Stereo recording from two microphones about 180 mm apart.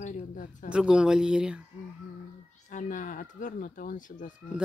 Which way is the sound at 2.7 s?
45° left (ahead or behind).